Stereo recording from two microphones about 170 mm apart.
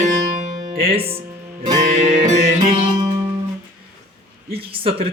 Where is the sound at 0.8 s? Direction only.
35° right (ahead or behind).